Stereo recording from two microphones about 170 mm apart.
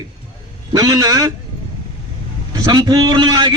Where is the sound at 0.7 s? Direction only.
20° right (ahead or behind).